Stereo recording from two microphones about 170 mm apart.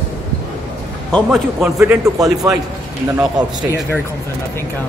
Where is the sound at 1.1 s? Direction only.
Centre (ahead or behind).